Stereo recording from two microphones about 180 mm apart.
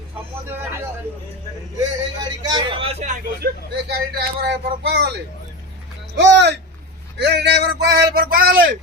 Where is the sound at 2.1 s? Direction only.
20° right (ahead or behind).